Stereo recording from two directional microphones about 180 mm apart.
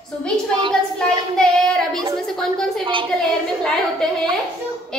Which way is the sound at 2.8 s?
30° right (ahead or behind).